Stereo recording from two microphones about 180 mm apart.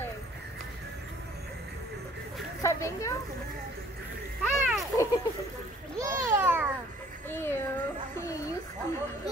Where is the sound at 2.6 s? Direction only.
15° left (ahead or behind).